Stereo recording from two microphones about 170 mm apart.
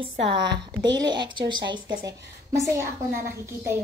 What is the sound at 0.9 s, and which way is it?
Speech, 25° right (ahead or behind).